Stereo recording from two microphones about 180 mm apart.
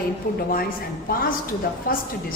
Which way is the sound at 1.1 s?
55° left (ahead or behind).